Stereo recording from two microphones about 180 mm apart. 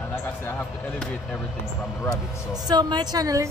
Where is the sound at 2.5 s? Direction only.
20° right (ahead or behind).